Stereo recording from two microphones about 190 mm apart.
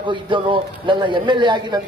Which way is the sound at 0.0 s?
25° right (ahead or behind).